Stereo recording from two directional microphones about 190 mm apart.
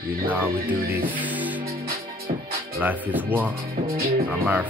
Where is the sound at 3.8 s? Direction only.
50° right (ahead or behind).